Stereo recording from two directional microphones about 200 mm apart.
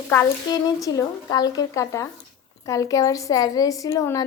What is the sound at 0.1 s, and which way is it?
A woman's voice, 15° left (ahead or behind).